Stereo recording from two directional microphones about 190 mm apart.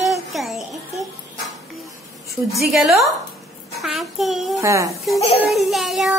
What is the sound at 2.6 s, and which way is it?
Child singing, centre (ahead or behind).